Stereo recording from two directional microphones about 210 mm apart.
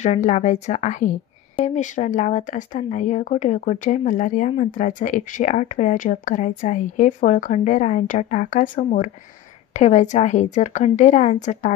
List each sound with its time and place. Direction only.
0.0 s speech: 35° left (ahead or behind)